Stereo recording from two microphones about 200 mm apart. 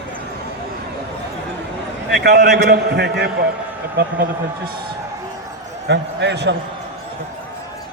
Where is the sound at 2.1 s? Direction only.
55° right (ahead or behind).